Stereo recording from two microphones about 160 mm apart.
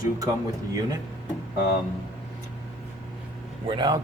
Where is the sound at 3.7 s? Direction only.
30° right (ahead or behind).